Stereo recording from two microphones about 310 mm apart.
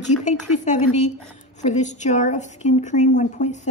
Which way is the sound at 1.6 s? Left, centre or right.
Left.